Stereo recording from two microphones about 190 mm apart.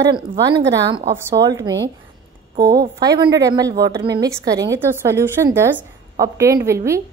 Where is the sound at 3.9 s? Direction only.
60° right (ahead or behind).